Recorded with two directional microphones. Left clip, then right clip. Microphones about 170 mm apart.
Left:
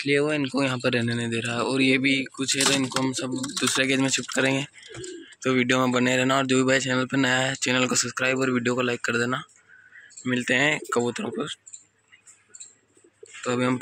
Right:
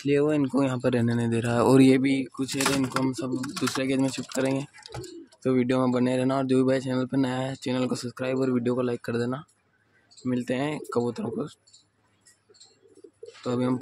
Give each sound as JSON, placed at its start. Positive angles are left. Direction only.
{"t": 0.0, "sound": "speech", "side_deg": -15}
{"t": 2.0, "sound": "speech", "side_deg": -15}
{"t": 5.4, "sound": "speech", "side_deg": -20}
{"t": 13.5, "sound": "speech", "side_deg": -10}